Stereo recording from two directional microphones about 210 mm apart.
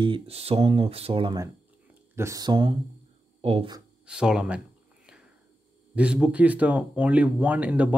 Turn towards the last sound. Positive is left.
turn(degrees=-5)  # may be behind; listen again after turning